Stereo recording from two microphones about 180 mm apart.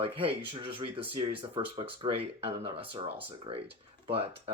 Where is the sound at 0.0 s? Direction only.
30° right (ahead or behind).